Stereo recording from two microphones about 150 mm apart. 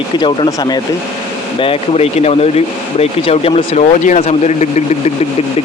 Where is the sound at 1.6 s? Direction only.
40° left (ahead or behind).